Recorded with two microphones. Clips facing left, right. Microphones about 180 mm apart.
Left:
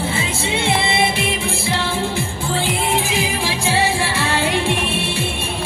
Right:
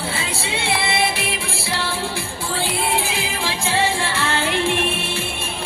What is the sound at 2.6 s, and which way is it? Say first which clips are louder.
Music: left 2 dB; 20° left (ahead or behind).